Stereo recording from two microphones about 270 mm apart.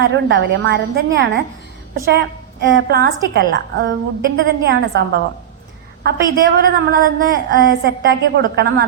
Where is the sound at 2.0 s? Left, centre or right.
Right.